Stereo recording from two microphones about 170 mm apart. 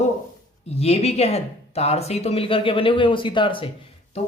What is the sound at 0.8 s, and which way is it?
A woman's voice, 40° left (ahead or behind).